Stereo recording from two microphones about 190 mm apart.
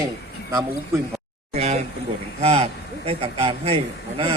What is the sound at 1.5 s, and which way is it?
Speech, 35° right (ahead or behind).